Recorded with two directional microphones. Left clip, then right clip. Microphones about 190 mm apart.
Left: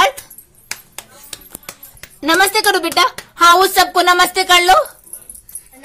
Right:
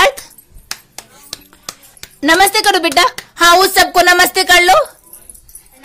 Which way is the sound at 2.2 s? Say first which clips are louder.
Right 3 dB; 15° right (ahead or behind).